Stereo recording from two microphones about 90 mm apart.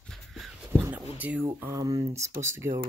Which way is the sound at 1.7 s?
45° right (ahead or behind).